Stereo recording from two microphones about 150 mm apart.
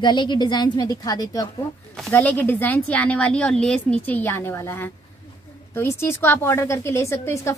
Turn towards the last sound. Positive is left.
turn(degrees=15)  # may be behind; listen again after turning